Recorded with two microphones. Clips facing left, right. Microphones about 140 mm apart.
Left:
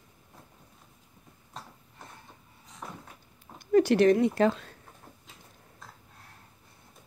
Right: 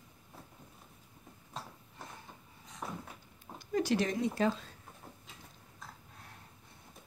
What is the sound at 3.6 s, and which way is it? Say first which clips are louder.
Speech: left 10 dB; 60° left (ahead or behind).